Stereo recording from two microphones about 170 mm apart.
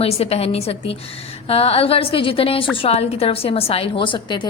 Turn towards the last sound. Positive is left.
turn(degrees=30)  # may be behind; listen again after turning